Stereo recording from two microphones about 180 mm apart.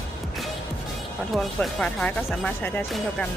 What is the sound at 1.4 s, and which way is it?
Speech, 5° left (ahead or behind).